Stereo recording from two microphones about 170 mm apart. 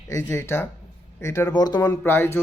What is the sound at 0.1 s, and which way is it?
Speech, 15° left (ahead or behind).